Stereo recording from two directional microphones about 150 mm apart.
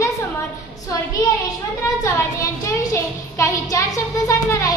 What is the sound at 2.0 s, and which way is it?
Speech, 20° left (ahead or behind).